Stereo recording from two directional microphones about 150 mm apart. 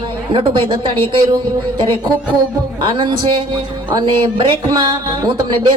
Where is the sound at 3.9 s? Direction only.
30° right (ahead or behind).